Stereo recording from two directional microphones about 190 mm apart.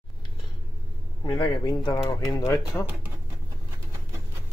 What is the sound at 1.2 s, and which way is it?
Speech, 20° left (ahead or behind).